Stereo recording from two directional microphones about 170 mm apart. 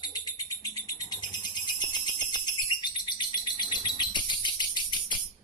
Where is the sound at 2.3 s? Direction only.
25° left (ahead or behind).